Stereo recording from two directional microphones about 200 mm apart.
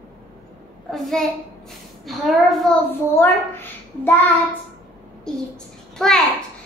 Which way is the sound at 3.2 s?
10° left (ahead or behind).